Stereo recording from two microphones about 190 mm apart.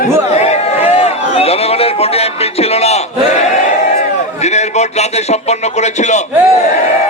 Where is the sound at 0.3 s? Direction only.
35° left (ahead or behind).